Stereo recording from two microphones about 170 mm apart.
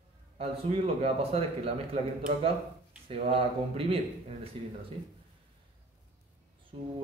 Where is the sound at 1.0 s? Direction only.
35° right (ahead or behind).